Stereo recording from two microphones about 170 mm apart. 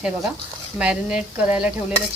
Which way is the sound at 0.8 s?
5° right (ahead or behind).